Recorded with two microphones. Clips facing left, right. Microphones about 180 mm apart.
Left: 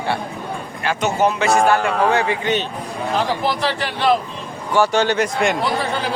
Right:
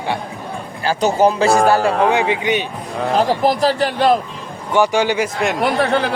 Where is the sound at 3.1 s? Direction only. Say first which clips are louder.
Right 5 dB; 40° right (ahead or behind).